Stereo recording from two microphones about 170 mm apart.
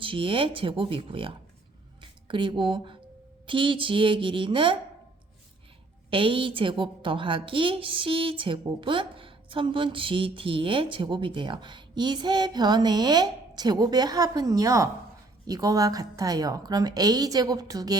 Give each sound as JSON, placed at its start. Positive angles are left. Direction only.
{"t": 0.0, "sound": "a woman's voice", "side_deg": -30}
{"t": 6.1, "sound": "a woman's voice", "side_deg": -30}